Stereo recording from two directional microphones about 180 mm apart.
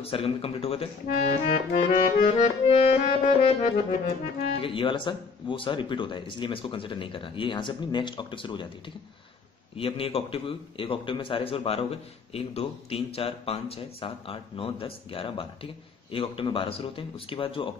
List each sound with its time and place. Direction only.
0.0 s a man's voice: 30° left (ahead or behind)
1.4 s accordion: 50° left (ahead or behind)
2.2 s a man's voice: 35° left (ahead or behind)
9.8 s a man's voice: 30° left (ahead or behind)